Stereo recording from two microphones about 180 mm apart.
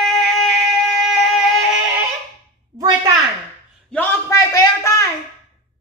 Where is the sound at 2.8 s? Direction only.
20° right (ahead or behind).